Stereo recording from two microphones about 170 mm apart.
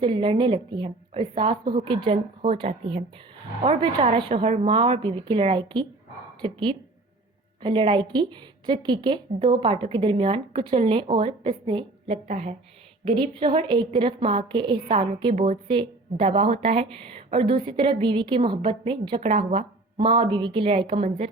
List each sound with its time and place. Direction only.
0.0 s a woman's voice: 30° right (ahead or behind)
12.3 s speech: 40° right (ahead or behind)
13.1 s a woman's voice: 30° right (ahead or behind)
19.4 s speech: 50° right (ahead or behind)
20.0 s a woman's voice: 30° right (ahead or behind)